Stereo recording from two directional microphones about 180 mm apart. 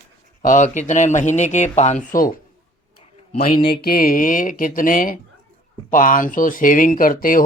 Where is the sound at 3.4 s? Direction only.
55° left (ahead or behind).